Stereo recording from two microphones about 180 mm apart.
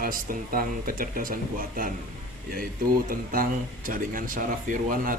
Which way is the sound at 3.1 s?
50° right (ahead or behind).